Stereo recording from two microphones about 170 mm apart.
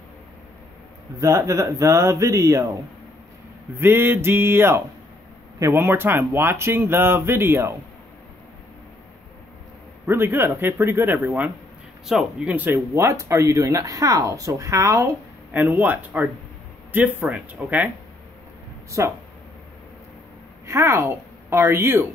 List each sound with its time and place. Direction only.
1.2 s speech: 20° right (ahead or behind)
3.7 s speech: 15° right (ahead or behind)
10.0 s speech: 15° right (ahead or behind)
18.9 s speech: 15° right (ahead or behind)
20.6 s a woman's voice: 15° right (ahead or behind)